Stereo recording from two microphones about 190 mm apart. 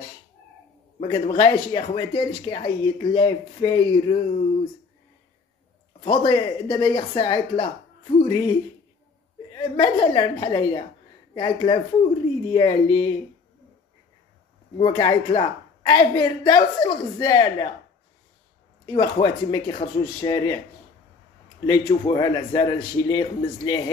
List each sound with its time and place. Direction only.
1.0 s speech: 25° left (ahead or behind)
5.9 s speech: 25° left (ahead or behind)
9.6 s speech: 25° left (ahead or behind)
14.8 s speech: 25° left (ahead or behind)
18.9 s speech: 25° left (ahead or behind)
21.6 s speech: 20° left (ahead or behind)